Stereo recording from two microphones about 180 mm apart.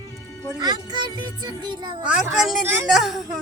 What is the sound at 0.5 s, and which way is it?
A child's voice, 20° right (ahead or behind).